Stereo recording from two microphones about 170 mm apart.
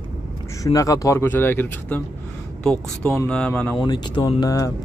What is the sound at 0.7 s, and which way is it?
Speech, 20° left (ahead or behind).